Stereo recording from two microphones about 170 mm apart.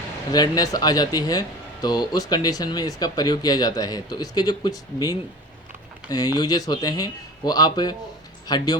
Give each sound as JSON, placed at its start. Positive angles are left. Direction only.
{"t": 0.3, "sound": "speech", "side_deg": 25}
{"t": 6.1, "sound": "speech", "side_deg": 25}